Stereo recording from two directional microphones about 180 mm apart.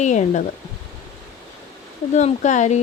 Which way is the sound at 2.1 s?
40° left (ahead or behind).